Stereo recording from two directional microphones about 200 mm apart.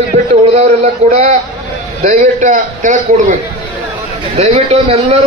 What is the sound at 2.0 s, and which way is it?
A man's voice, 40° right (ahead or behind).